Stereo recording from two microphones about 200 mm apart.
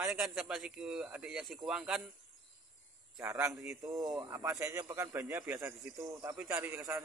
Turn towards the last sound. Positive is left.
turn(degrees=-10)  # may be behind; listen again after turning